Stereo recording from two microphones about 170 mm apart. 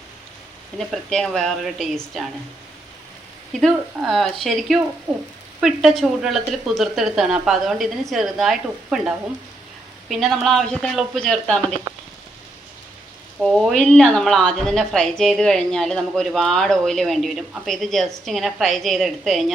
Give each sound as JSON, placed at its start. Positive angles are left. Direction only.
{"t": 0.8, "sound": "a woman's voice", "side_deg": 0}
{"t": 3.6, "sound": "a woman's voice", "side_deg": 0}
{"t": 13.4, "sound": "a woman's voice", "side_deg": 0}